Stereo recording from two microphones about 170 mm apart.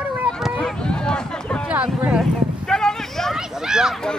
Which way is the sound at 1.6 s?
5° right (ahead or behind).